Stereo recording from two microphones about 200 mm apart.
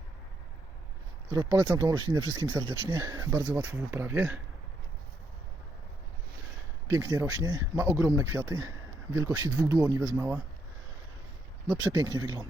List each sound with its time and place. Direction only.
1.3 s speech: 20° right (ahead or behind)
6.8 s speech: 15° right (ahead or behind)
11.7 s speech: 15° right (ahead or behind)